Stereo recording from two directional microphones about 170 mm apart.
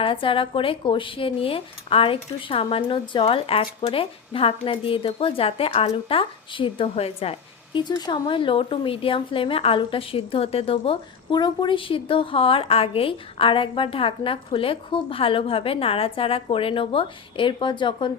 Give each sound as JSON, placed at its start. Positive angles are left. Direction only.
{"t": 0.0, "sound": "speech", "side_deg": 30}